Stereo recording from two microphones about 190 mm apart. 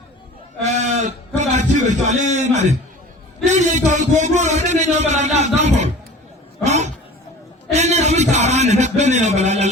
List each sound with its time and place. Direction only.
0.6 s a man's voice: 40° right (ahead or behind)
6.7 s a sound: 35° right (ahead or behind)
7.7 s a man's voice: 35° right (ahead or behind)